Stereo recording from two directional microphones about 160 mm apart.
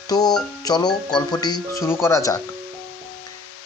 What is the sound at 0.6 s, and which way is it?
Speech, 25° left (ahead or behind).